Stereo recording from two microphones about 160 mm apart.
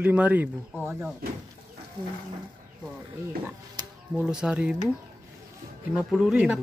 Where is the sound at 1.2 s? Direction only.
75° right (ahead or behind).